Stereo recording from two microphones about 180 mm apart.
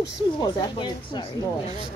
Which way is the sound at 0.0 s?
20° left (ahead or behind).